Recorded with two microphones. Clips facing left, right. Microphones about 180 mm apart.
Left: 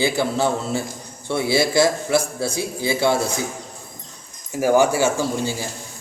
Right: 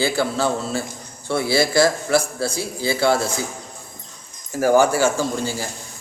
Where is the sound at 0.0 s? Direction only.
20° left (ahead or behind).